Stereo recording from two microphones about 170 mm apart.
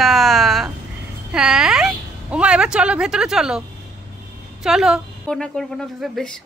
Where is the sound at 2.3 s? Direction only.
5° right (ahead or behind).